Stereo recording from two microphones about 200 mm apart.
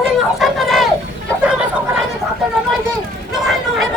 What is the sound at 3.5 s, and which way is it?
Chatter, centre (ahead or behind).